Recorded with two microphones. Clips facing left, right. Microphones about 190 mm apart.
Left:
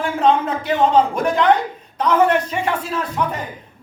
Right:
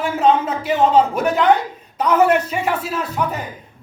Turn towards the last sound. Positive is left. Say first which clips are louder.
# even
turn(degrees=-5)  # may be behind; listen again after turning